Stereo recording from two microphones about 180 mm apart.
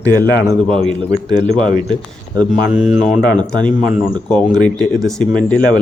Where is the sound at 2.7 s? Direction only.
5° right (ahead or behind).